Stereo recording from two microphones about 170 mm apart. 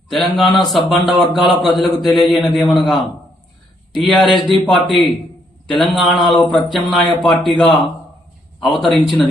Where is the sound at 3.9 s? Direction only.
Centre (ahead or behind).